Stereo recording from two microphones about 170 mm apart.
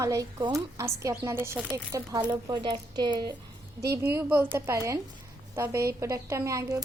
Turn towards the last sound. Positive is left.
turn(degrees=-20)  # may be behind; listen again after turning